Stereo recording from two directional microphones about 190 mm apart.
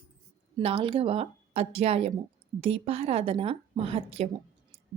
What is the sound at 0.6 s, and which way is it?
A woman's voice, 30° right (ahead or behind).